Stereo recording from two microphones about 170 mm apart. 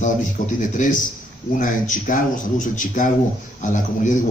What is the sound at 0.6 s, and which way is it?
A man's voice, 50° left (ahead or behind).